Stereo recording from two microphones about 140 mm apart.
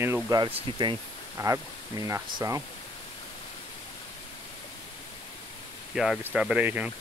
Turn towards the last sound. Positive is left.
turn(degrees=-10)  # may be behind; listen again after turning